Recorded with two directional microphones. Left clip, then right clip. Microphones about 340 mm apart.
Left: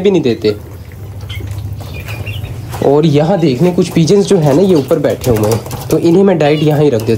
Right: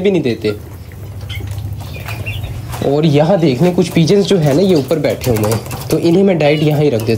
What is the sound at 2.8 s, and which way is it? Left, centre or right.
Speech, centre.